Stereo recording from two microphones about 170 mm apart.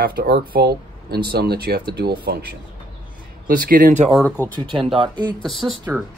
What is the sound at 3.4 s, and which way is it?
Speech, 60° right (ahead or behind).